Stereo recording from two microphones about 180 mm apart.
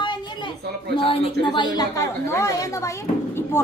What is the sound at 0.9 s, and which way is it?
A woman's voice, 30° left (ahead or behind).